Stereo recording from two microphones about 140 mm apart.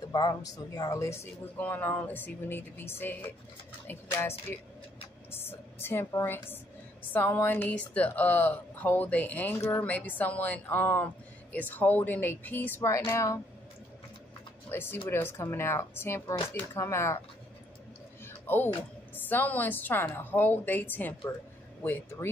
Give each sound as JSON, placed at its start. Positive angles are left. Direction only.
{"t": 0.1, "sound": "a woman's voice", "side_deg": 30}
{"t": 14.7, "sound": "a woman's voice", "side_deg": 15}
{"t": 18.2, "sound": "a sound", "side_deg": 15}
{"t": 19.1, "sound": "a woman's voice", "side_deg": 15}